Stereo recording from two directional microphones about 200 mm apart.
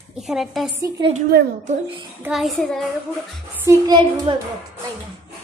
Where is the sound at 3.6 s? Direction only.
20° right (ahead or behind).